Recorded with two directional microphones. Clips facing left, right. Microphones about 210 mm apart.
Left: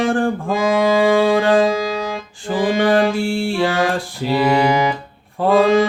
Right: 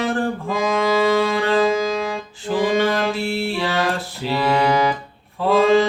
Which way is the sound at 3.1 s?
45° left (ahead or behind).